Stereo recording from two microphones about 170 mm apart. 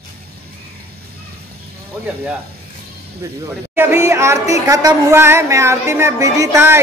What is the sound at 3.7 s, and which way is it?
A woman's voice, 15° right (ahead or behind).